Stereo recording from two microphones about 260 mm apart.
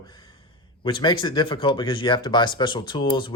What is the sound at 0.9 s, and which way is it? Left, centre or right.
Speech, centre.